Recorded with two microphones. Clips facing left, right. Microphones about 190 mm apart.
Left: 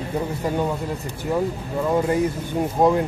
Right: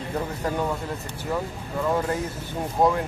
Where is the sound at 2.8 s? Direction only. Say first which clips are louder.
Left 3 dB; 20° left (ahead or behind).